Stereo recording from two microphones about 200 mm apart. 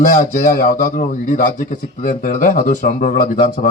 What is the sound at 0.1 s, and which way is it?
Speech, 45° left (ahead or behind).